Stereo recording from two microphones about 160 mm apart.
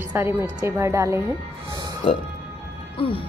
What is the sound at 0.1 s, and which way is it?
Speech, 10° right (ahead or behind).